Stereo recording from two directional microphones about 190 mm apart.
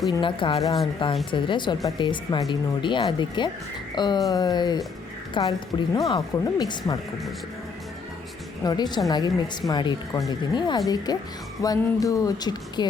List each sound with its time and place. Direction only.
0.2 s speech: 25° left (ahead or behind)
8.6 s speech: 20° left (ahead or behind)